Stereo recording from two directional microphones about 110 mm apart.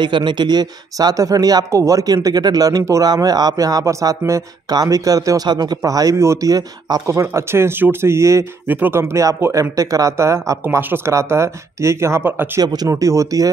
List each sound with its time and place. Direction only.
0.0 s speech: 45° right (ahead or behind); by 12.4 s 15° right (ahead or behind)
12.5 s speech: 35° right (ahead or behind)